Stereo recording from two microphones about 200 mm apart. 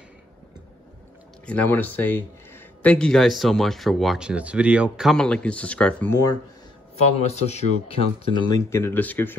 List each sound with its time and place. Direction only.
1.4 s speech: 5° left (ahead or behind)
7.2 s speech: 35° left (ahead or behind); by 9.3 s 10° left (ahead or behind)